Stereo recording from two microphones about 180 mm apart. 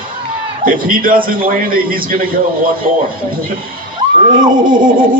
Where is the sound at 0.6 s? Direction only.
50° right (ahead or behind).